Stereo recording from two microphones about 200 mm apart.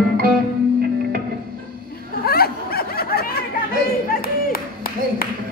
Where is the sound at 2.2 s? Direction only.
50° left (ahead or behind).